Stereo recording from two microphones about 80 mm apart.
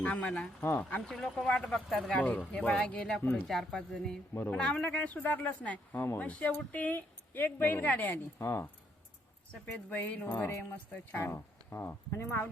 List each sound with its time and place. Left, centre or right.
0.0 s speech: centre
1.0 s speech: centre
2.1 s speech: centre
8.4 s speech: left
9.5 s speech: left
11.2 s speech: left